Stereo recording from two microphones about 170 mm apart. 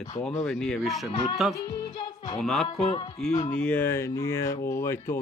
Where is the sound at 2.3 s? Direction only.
Centre (ahead or behind).